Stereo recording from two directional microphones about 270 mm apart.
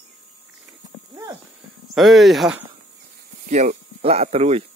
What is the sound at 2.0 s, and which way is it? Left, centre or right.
Speech, centre.